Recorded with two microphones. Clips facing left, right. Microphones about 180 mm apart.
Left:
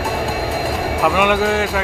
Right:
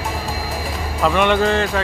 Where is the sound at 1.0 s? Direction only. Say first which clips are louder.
Right 1 dB; 10° left (ahead or behind).